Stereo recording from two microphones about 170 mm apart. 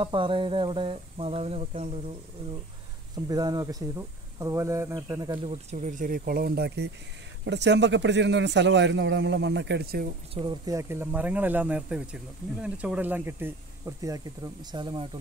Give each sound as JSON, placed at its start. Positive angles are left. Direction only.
{"t": 0.0, "sound": "a sound", "side_deg": -30}
{"t": 3.3, "sound": "speech", "side_deg": -25}
{"t": 5.7, "sound": "speech", "side_deg": -45}
{"t": 7.4, "sound": "a man's voice", "side_deg": -90}
{"t": 10.3, "sound": "speech", "side_deg": -25}